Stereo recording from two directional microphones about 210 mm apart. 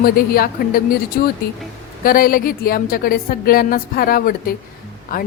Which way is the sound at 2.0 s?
45° left (ahead or behind).